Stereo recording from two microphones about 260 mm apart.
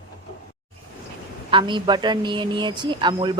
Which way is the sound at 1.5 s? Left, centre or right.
Centre.